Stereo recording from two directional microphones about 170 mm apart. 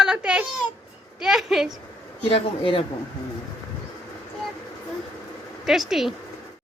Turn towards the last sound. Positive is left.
turn(degrees=0)  # may be behind; listen again after turning